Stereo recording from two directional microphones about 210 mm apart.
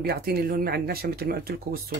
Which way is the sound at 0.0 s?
45° right (ahead or behind).